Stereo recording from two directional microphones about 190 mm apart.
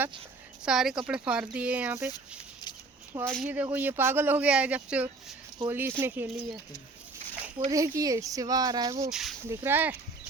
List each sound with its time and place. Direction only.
0.6 s speech: 5° right (ahead or behind)
3.3 s speech: 5° right (ahead or behind)
7.7 s speech: 15° right (ahead or behind)
9.0 s speech: centre (ahead or behind)